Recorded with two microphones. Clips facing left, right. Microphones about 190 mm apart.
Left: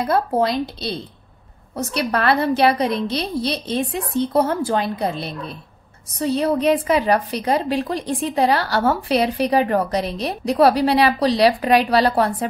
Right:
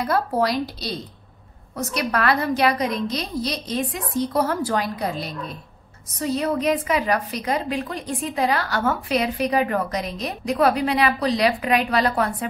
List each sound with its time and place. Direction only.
0.0 s a woman's voice: 25° left (ahead or behind)